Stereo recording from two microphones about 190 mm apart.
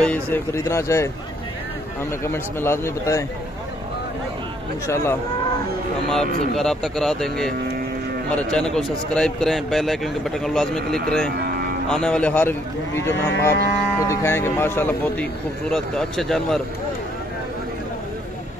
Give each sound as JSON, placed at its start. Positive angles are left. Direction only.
{"t": 0.0, "sound": "speech", "side_deg": 10}
{"t": 2.2, "sound": "speech", "side_deg": 15}
{"t": 4.8, "sound": "speech", "side_deg": 15}
{"t": 6.0, "sound": "speech", "side_deg": 0}
{"t": 11.3, "sound": "music", "side_deg": -55}
{"t": 11.9, "sound": "speech", "side_deg": 5}